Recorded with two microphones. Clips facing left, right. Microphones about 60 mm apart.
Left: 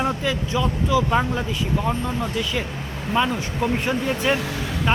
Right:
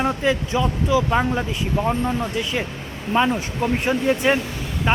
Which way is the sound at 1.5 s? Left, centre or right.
Right.